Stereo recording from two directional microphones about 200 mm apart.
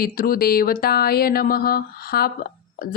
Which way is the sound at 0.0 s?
45° left (ahead or behind).